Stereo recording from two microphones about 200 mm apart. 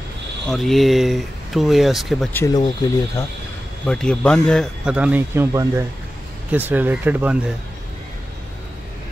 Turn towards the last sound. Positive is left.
turn(degrees=-10)  # may be behind; listen again after turning